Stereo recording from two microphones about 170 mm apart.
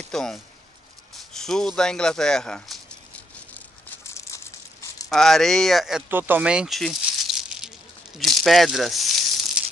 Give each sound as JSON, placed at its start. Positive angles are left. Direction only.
{"t": 0.1, "sound": "a sound", "side_deg": 5}
{"t": 1.3, "sound": "speech", "side_deg": 5}
{"t": 4.0, "sound": "crumpling", "side_deg": 15}
{"t": 5.1, "sound": "speech", "side_deg": 0}